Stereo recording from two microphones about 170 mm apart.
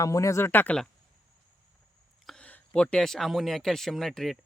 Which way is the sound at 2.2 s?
5° left (ahead or behind).